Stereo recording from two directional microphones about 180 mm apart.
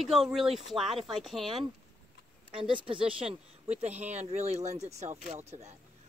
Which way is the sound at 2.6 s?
30° right (ahead or behind).